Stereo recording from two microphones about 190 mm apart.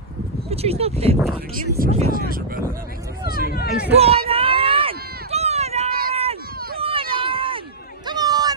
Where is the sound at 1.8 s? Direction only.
50° right (ahead or behind).